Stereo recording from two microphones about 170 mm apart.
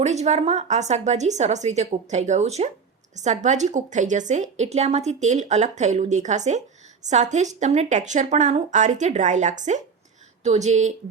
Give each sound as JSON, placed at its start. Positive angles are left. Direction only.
{"t": 0.0, "sound": "a woman's voice", "side_deg": -40}